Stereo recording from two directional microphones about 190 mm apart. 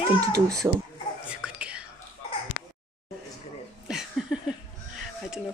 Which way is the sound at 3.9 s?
Centre (ahead or behind).